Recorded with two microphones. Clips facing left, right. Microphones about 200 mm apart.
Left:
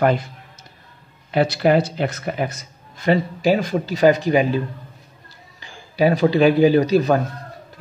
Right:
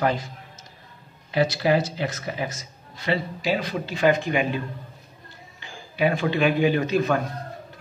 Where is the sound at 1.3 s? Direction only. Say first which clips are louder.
Left 4 dB; 55° left (ahead or behind).